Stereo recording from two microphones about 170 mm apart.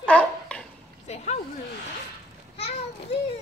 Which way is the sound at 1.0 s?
40° left (ahead or behind).